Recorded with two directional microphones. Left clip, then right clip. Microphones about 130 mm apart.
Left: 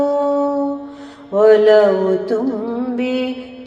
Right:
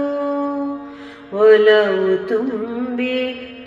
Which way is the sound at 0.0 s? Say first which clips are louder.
Left 5 dB; 55° left (ahead or behind).